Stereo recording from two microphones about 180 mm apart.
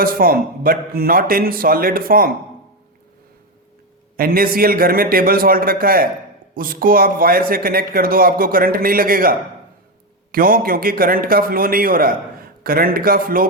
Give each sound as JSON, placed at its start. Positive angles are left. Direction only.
{"t": 0.0, "sound": "a man's voice", "side_deg": -55}
{"t": 4.2, "sound": "a man's voice", "side_deg": -55}
{"t": 10.3, "sound": "a man's voice", "side_deg": -50}